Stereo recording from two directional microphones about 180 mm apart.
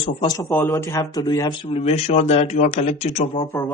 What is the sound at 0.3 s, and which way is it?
Speech, 15° left (ahead or behind).